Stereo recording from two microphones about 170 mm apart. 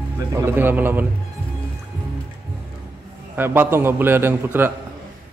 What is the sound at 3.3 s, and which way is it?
A man's voice, 10° right (ahead or behind).